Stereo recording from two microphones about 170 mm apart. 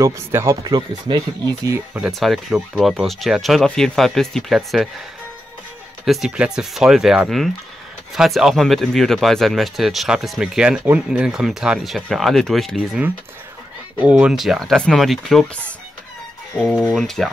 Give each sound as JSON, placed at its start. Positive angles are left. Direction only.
{"t": 0.0, "sound": "speech", "side_deg": -15}
{"t": 2.0, "sound": "speech", "side_deg": 0}
{"t": 6.0, "sound": "speech", "side_deg": 0}